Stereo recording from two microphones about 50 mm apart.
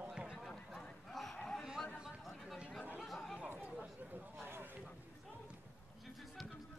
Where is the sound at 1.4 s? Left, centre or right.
Centre.